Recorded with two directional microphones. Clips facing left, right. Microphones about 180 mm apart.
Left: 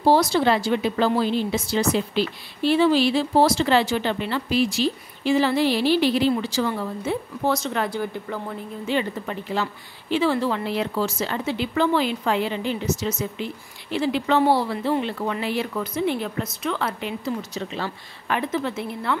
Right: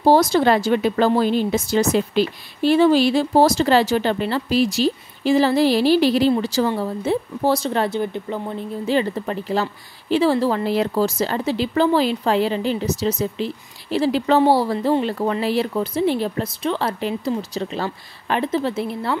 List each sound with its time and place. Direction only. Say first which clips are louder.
0.0 s a woman's voice: right 3 dB; 45° right (ahead or behind); by 8.5 s 20° right (ahead or behind)
8.8 s speech: right 4 dB; 35° right (ahead or behind)